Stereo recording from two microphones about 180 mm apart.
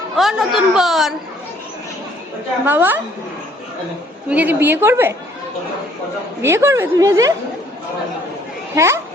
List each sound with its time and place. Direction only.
0.2 s a man's voice: centre (ahead or behind)
2.6 s a woman's voice: 10° right (ahead or behind)
4.3 s a woman's voice: 10° right (ahead or behind)
6.4 s a woman's voice: 15° right (ahead or behind)
8.7 s speech: 15° right (ahead or behind)